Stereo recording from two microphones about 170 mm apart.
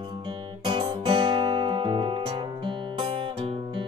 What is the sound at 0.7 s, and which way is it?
Music, 30° right (ahead or behind).